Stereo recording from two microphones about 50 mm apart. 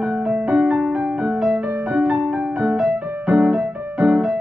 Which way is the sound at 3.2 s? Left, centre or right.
Centre.